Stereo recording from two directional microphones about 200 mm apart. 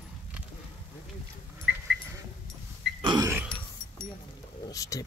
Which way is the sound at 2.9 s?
20° right (ahead or behind).